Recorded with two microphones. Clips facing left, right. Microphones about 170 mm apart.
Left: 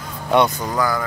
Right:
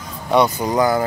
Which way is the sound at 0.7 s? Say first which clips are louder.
Right 5 dB; 25° right (ahead or behind).